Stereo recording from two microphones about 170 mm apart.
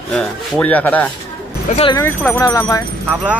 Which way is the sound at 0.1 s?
5° left (ahead or behind).